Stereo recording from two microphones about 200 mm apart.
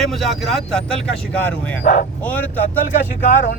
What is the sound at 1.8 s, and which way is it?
Speech, 45° left (ahead or behind).